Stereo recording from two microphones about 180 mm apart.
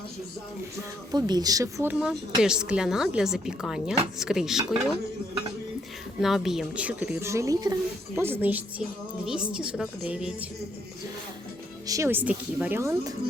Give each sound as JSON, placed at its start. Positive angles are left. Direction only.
{"t": 1.1, "sound": "speech", "side_deg": -20}
{"t": 6.1, "sound": "speech", "side_deg": 0}
{"t": 11.9, "sound": "speech", "side_deg": -15}